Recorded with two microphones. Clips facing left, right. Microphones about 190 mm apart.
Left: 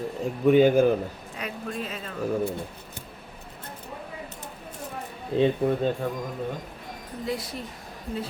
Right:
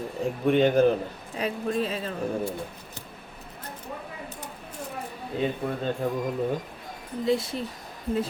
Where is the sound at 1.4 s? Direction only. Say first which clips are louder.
Right 7 dB; 30° right (ahead or behind).